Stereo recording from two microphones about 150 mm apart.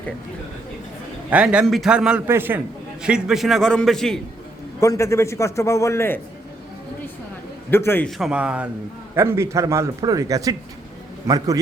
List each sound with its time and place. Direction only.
1.3 s a man's voice: 10° right (ahead or behind)
4.8 s a man's voice: 20° left (ahead or behind)
7.7 s a man's voice: 15° left (ahead or behind)
8.0 s a man's voice: 5° right (ahead or behind); by 11.6 s 25° right (ahead or behind)